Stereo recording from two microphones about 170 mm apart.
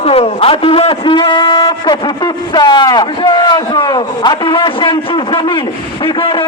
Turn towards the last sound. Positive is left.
turn(degrees=30)  # may be behind; listen again after turning